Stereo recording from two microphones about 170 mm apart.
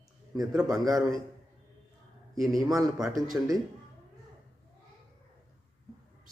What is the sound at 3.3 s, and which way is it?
Speech, 15° right (ahead or behind).